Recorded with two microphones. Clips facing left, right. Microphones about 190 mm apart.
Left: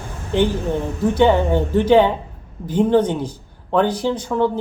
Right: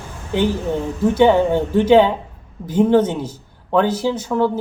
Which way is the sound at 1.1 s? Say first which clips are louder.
Right 2 dB; 10° right (ahead or behind).